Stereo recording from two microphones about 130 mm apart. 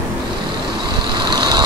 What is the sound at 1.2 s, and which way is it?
Vehicle, 35° right (ahead or behind).